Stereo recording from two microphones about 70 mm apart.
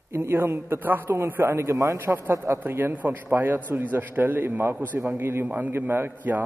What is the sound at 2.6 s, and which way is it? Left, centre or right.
A man's voice, right.